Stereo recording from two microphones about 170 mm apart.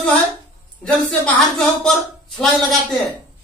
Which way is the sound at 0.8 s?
5° left (ahead or behind).